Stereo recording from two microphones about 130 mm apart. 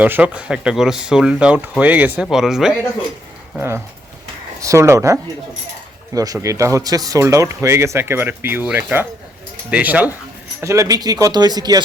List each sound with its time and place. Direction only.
0.0 s speech: 10° right (ahead or behind)
3.6 s speech: 20° right (ahead or behind)
10.6 s speech: 25° right (ahead or behind)